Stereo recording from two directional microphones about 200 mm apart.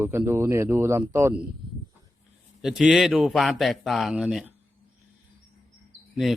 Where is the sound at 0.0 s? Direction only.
10° right (ahead or behind).